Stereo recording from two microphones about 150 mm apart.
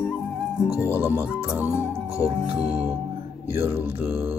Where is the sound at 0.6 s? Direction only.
20° left (ahead or behind).